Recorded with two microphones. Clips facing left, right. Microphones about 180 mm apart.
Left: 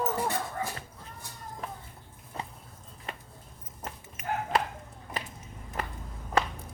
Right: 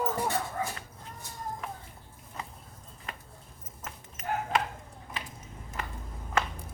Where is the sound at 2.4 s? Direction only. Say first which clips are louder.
Left 3 dB; 30° left (ahead or behind).